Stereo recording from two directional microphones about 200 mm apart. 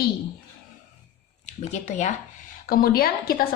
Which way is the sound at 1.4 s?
35° left (ahead or behind).